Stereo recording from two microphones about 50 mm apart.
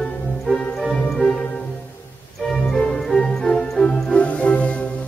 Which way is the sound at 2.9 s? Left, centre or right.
Centre.